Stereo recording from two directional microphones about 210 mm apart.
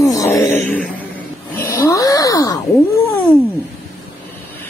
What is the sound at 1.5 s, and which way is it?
Snoring, 15° left (ahead or behind).